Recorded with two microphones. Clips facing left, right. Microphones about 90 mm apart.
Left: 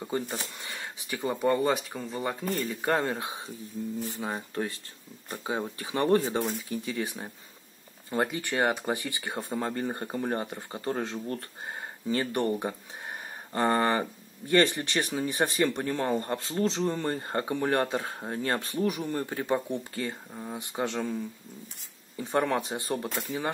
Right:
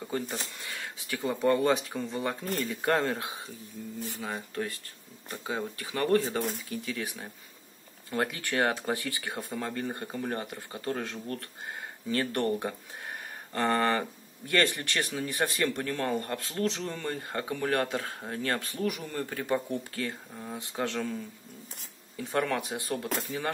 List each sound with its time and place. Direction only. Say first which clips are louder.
0.0 s speech: left 2 dB; 20° left (ahead or behind)
1.3 s speech: right 1 dB; 5° left (ahead or behind)
3.2 s speech: left 2 dB; 20° left (ahead or behind)
22.2 s speech: left 2 dB; 20° left (ahead or behind)